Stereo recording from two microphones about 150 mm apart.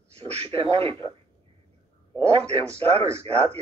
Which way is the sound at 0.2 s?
40° right (ahead or behind).